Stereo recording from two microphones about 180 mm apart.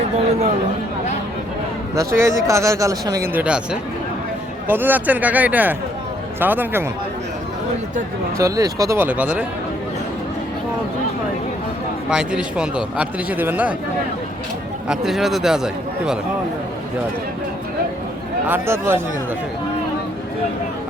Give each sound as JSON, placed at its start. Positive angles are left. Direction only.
{"t": 2.0, "sound": "speech", "side_deg": -15}
{"t": 3.4, "sound": "a man's voice", "side_deg": -5}
{"t": 8.4, "sound": "speech", "side_deg": -20}
{"t": 12.1, "sound": "speech", "side_deg": -5}
{"t": 14.8, "sound": "a man's voice", "side_deg": 0}
{"t": 18.4, "sound": "speech", "side_deg": -15}